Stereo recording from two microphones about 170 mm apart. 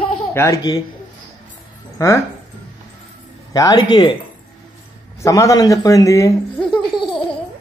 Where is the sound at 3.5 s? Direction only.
20° left (ahead or behind).